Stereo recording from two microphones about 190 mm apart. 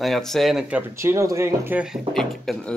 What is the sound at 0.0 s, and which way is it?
Speech, centre (ahead or behind).